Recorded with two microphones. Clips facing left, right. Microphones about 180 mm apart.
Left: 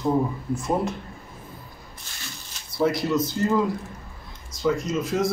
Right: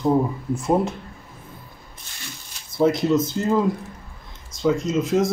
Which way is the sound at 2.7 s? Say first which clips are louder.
Right 4 dB; 20° right (ahead or behind).